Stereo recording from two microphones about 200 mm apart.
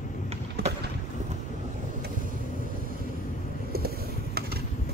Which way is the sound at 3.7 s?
50° right (ahead or behind).